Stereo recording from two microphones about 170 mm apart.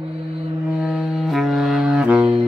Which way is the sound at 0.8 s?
5° right (ahead or behind).